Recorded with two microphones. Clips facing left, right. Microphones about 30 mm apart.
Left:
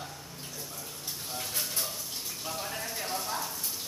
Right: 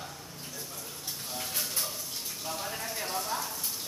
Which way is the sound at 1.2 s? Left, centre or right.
Centre.